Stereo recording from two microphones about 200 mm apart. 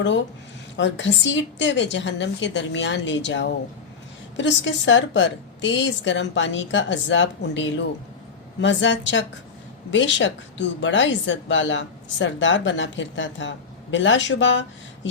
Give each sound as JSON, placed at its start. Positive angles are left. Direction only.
{"t": 0.8, "sound": "a woman's voice", "side_deg": 65}